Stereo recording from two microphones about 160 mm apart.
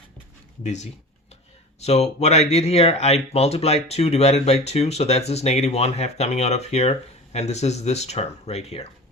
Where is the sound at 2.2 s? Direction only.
40° left (ahead or behind).